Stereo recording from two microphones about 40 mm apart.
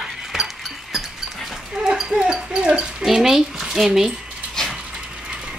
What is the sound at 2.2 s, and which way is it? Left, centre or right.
Speech, right.